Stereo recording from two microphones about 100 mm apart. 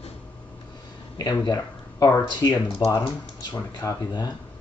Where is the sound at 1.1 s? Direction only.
45° left (ahead or behind).